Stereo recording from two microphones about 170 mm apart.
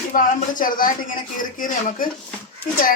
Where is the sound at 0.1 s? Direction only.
50° left (ahead or behind).